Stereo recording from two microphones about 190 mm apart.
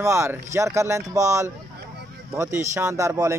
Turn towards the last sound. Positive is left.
turn(degrees=-15)  # may be behind; listen again after turning